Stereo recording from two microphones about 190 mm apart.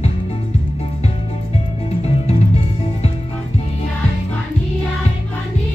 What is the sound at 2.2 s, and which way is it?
Music, 35° left (ahead or behind).